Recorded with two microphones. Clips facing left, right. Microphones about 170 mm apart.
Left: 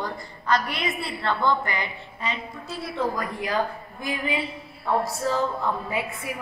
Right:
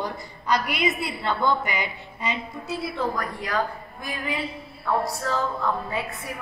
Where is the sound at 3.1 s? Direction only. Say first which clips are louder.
Left 1 dB; 25° left (ahead or behind).